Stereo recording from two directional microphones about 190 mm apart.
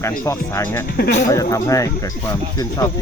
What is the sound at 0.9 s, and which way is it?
Speech, 60° left (ahead or behind).